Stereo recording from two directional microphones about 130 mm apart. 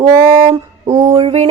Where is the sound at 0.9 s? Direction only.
25° right (ahead or behind).